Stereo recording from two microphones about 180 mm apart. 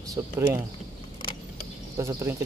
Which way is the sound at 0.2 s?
15° right (ahead or behind).